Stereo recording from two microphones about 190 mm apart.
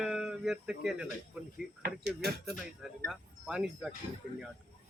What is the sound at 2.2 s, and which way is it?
Speech, 60° right (ahead or behind).